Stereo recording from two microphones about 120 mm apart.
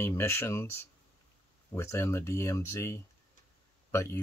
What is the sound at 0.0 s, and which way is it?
Speech, 20° left (ahead or behind).